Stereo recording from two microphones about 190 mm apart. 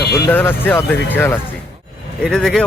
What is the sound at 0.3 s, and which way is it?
Speech, 10° left (ahead or behind).